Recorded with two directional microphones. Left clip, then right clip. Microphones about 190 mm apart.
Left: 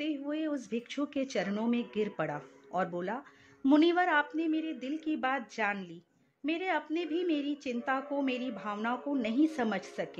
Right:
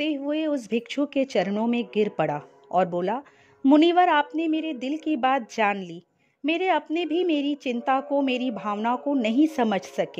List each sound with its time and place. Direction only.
0.0 s a woman's voice: 45° right (ahead or behind)